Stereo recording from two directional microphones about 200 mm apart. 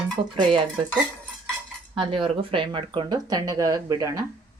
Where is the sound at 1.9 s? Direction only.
25° right (ahead or behind).